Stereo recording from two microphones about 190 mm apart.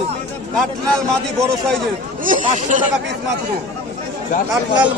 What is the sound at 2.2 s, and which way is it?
Speech, 45° right (ahead or behind).